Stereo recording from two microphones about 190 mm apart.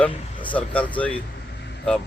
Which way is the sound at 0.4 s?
5° left (ahead or behind).